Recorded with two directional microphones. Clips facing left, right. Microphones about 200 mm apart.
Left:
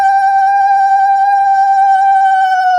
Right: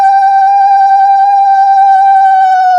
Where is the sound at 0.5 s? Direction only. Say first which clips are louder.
Right 4 dB; 70° right (ahead or behind).